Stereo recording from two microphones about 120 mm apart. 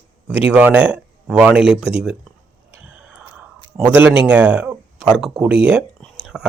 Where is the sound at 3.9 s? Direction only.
15° right (ahead or behind).